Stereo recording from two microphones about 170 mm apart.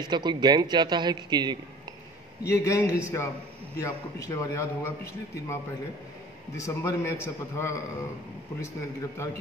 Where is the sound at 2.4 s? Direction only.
20° left (ahead or behind).